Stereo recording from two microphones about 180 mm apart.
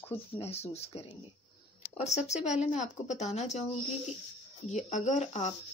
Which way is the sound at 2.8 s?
40° left (ahead or behind).